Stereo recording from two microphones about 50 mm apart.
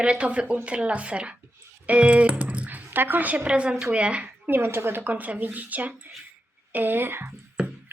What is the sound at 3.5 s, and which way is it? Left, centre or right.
Speech, right.